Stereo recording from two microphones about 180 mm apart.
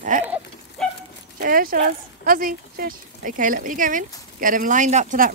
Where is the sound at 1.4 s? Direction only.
50° right (ahead or behind).